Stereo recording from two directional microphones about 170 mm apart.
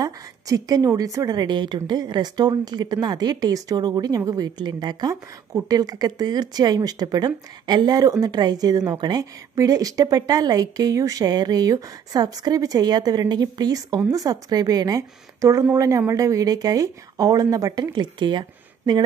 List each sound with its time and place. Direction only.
0.0 s a woman's voice: 20° right (ahead or behind)